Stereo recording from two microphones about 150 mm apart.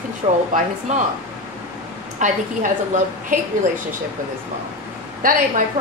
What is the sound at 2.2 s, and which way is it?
Speech, 55° right (ahead or behind).